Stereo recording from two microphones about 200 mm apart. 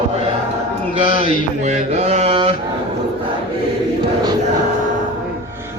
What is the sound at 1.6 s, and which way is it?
Mantra, 35° right (ahead or behind).